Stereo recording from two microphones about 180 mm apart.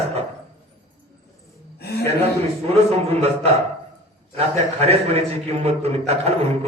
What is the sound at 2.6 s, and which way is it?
A man's voice, 35° right (ahead or behind).